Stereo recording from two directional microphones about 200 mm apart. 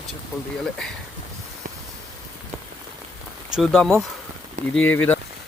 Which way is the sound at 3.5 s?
Centre (ahead or behind).